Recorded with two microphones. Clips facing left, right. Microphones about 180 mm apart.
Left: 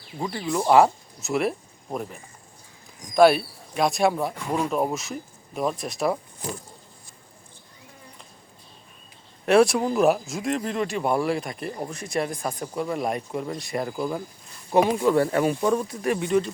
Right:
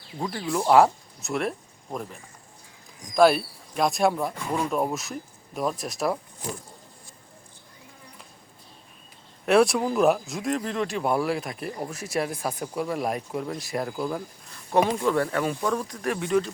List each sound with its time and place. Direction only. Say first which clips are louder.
0.2 s speech: left 1 dB; centre (ahead or behind)
3.2 s speech: left 2 dB; centre (ahead or behind)
9.5 s speech: left 2 dB; centre (ahead or behind); by 15.8 s 15° left (ahead or behind)
15.8 s speech: left 3 dB; 5° left (ahead or behind)